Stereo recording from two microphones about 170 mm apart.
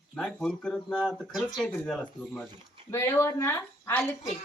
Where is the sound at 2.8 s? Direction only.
15° left (ahead or behind).